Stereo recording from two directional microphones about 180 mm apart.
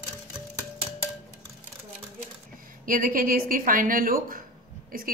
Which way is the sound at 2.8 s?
50° right (ahead or behind).